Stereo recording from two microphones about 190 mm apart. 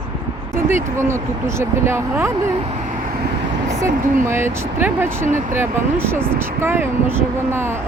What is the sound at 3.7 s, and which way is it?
Speech, 15° right (ahead or behind).